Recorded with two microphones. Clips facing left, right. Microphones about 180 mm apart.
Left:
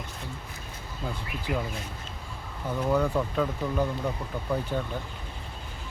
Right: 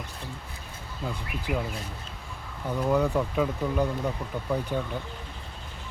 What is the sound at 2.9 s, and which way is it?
Speech, 5° right (ahead or behind).